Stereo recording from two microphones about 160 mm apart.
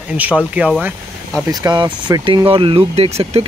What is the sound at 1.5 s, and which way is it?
Speech, 25° right (ahead or behind).